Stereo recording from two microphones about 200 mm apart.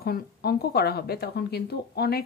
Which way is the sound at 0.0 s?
50° left (ahead or behind).